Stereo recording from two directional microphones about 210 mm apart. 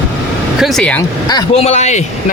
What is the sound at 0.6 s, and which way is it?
Speech, 5° left (ahead or behind).